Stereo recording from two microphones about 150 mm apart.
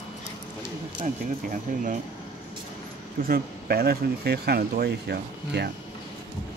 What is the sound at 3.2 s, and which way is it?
Speech, 80° right.